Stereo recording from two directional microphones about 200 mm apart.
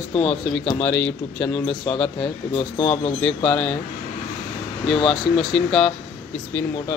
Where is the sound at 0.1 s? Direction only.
30° left (ahead or behind).